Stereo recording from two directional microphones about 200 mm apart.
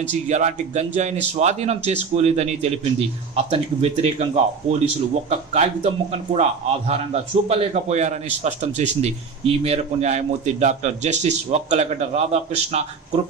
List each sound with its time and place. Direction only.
0.0 s a man's voice: 35° right (ahead or behind)
7.4 s a man's voice: 35° right (ahead or behind)